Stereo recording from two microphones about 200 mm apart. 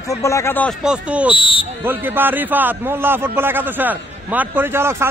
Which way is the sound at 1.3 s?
25° left (ahead or behind).